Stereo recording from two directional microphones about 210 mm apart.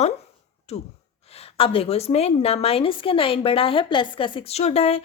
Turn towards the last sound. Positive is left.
turn(degrees=30)  # may be behind; listen again after turning